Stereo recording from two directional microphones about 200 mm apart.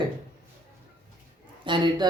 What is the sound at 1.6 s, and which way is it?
Speech, 25° right (ahead or behind).